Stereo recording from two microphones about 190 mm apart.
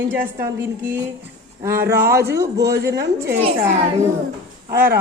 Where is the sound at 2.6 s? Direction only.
60° right (ahead or behind).